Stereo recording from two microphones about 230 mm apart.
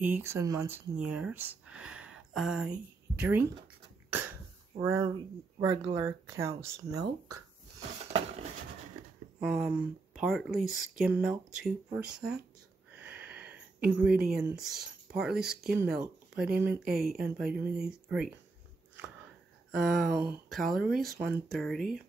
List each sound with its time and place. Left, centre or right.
0.0 s speech: centre
9.4 s speech: centre
12.9 s a sound: centre
14.3 s speech: centre
19.7 s speech: centre